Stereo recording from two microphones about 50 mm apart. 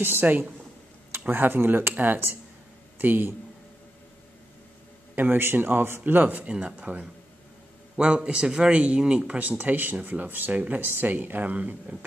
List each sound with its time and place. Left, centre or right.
0.0 s a man's voice: right
5.1 s a man's voice: right
6.5 s speech: right
8.0 s speech: right